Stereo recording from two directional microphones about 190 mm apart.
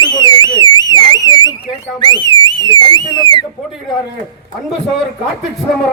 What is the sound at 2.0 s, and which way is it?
Speech, 20° left (ahead or behind).